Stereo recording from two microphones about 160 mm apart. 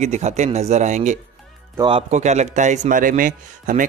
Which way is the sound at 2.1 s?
45° right (ahead or behind).